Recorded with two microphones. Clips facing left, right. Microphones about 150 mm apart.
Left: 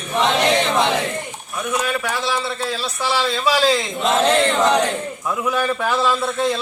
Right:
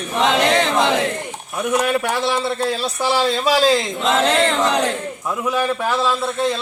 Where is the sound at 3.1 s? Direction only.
45° right (ahead or behind).